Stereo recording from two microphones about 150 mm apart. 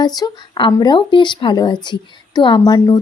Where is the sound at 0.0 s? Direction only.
30° left (ahead or behind).